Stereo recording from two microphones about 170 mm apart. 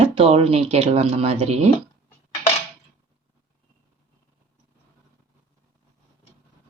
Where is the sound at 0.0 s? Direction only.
35° right (ahead or behind).